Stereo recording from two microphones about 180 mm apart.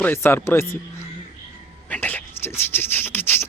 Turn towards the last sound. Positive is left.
turn(degrees=10)  # may be behind; listen again after turning